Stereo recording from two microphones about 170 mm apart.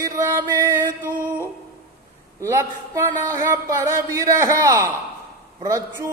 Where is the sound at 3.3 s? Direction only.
15° right (ahead or behind).